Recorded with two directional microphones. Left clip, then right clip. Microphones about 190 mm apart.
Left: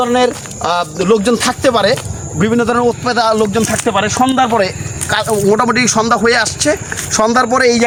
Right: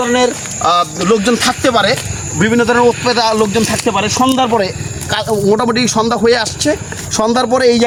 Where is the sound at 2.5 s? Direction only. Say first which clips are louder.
Right 3 dB; 5° left (ahead or behind).